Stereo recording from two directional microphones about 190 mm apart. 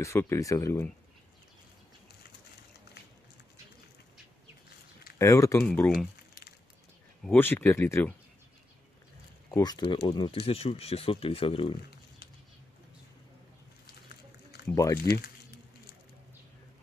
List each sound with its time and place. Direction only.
0.0 s speech: 15° left (ahead or behind)
5.2 s speech: 15° left (ahead or behind)
7.2 s speech: 10° left (ahead or behind)
9.5 s speech: 20° left (ahead or behind)
14.7 s speech: 15° left (ahead or behind)